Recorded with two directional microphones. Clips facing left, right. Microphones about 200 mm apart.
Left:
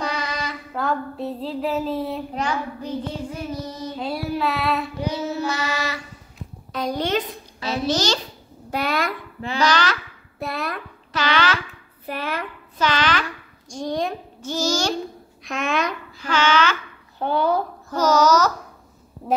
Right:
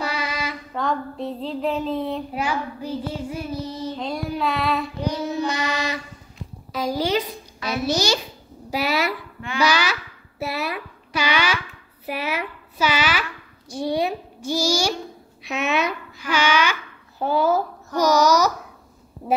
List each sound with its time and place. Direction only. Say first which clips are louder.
0.0 s female singing: even; 5° right (ahead or behind)
0.7 s child singing: left 1 dB; 5° left (ahead or behind)
2.3 s a child's voice: even; 10° right (ahead or behind)
3.5 s child singing: right 1 dB; 10° left (ahead or behind)
5.5 s a child's voice: right 1 dB; 15° right (ahead or behind)
6.3 s a sound: right 1 dB; centre (ahead or behind)
7.6 s a child's voice: even; 10° right (ahead or behind)
8.6 s a sound: right 1 dB; 5° right (ahead or behind)
9.6 s a child's voice: even; 10° right (ahead or behind)
15.4 s child singing: right 1 dB; 5° right (ahead or behind)
16.3 s a child's voice: left 1 dB; 10° right (ahead or behind)
17.2 s child singing: right 1 dB; 5° right (ahead or behind)
17.9 s a child's voice: even; 10° right (ahead or behind)